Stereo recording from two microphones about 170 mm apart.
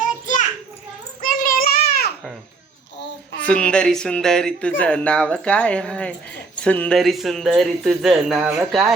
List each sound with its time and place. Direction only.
0.0 s children playing: 50° left (ahead or behind)
1.2 s child singing: 55° left (ahead or behind)
3.4 s speech: 5° left (ahead or behind)